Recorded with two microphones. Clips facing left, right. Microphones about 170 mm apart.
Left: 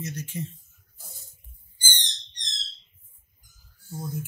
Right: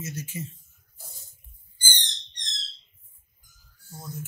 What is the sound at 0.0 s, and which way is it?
Speech, 10° right (ahead or behind).